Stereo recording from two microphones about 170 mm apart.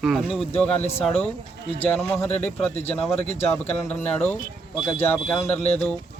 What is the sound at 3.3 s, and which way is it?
Speech, 40° left (ahead or behind).